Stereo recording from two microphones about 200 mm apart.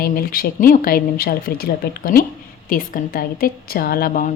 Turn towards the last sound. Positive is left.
turn(degrees=45)  # may be behind; listen again after turning